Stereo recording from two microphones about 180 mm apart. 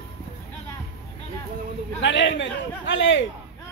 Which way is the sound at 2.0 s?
85° left.